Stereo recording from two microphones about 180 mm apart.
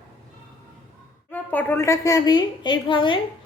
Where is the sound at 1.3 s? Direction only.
10° left (ahead or behind).